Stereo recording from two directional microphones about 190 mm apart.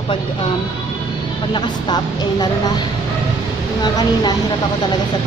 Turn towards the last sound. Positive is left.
turn(degrees=20)  # may be behind; listen again after turning